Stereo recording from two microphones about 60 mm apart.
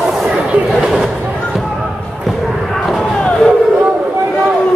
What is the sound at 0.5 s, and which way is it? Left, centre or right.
Chatter, centre.